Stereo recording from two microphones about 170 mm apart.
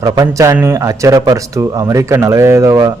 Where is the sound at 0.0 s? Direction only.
20° right (ahead or behind).